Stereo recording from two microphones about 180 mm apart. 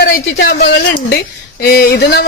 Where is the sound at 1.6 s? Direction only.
60° left (ahead or behind).